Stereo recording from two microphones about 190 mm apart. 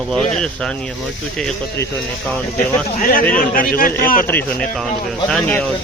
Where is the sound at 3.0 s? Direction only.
45° left (ahead or behind).